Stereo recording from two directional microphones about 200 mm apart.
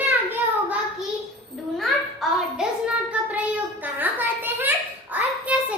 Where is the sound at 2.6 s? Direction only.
5° right (ahead or behind).